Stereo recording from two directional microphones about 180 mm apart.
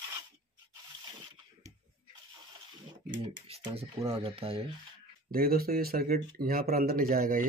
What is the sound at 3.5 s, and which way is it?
Speech, 35° right (ahead or behind).